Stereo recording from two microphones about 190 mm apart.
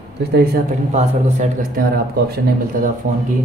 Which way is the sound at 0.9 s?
40° right (ahead or behind).